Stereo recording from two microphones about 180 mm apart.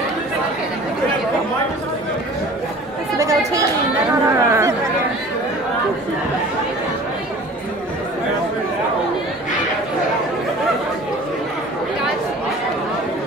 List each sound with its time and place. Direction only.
3.2 s chatter: 15° right (ahead or behind)